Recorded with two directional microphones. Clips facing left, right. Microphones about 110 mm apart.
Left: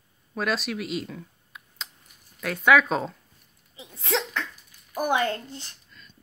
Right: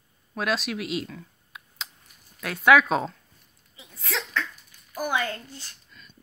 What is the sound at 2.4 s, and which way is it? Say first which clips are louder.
Speech: right 1 dB; 5° right (ahead or behind).